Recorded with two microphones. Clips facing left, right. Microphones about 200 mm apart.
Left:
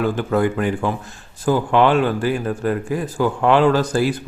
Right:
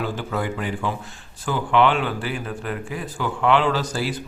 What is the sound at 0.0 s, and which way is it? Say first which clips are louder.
Speech: left 8 dB; 50° left (ahead or behind).